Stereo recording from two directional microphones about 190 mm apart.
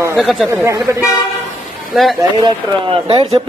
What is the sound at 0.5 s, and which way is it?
Speech, 15° right (ahead or behind).